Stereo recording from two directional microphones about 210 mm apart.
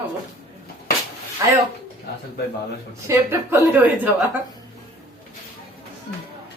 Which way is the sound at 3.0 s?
10° right (ahead or behind).